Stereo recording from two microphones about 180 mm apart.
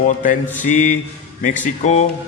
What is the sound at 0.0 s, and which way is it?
A man's voice, 50° left (ahead or behind).